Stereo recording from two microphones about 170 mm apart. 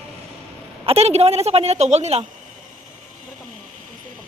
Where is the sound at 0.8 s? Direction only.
35° right (ahead or behind).